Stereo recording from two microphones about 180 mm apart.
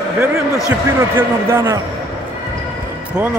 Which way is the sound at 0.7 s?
15° right (ahead or behind).